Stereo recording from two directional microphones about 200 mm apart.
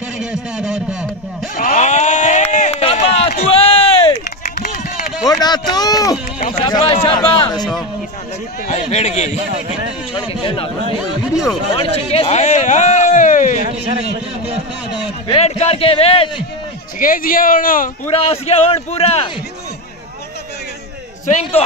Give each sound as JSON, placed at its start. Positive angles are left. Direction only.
{"t": 0.2, "sound": "a man's voice", "side_deg": -5}
{"t": 1.6, "sound": "run", "side_deg": 40}
{"t": 4.6, "sound": "run", "side_deg": 40}
{"t": 5.2, "sound": "a man's voice", "side_deg": 20}
{"t": 8.6, "sound": "speech", "side_deg": 35}
{"t": 10.1, "sound": "a man's voice", "side_deg": 25}
{"t": 11.3, "sound": "a man's voice", "side_deg": 0}
{"t": 11.7, "sound": "speech", "side_deg": 30}
{"t": 13.7, "sound": "a man's voice", "side_deg": -30}
{"t": 14.9, "sound": "a man's voice", "side_deg": 30}
{"t": 17.0, "sound": "speech", "side_deg": 45}
{"t": 18.1, "sound": "speech", "side_deg": 30}
{"t": 21.3, "sound": "speech", "side_deg": 35}